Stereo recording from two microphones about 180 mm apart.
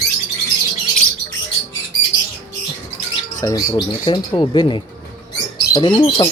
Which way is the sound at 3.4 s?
20° left (ahead or behind).